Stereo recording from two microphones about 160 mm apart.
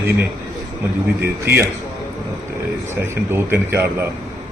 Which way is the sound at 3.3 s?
15° right (ahead or behind).